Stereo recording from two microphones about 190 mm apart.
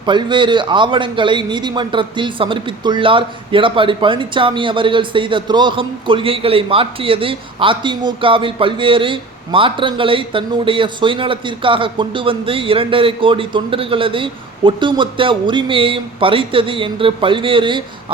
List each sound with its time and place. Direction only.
0.0 s speech: 25° right (ahead or behind)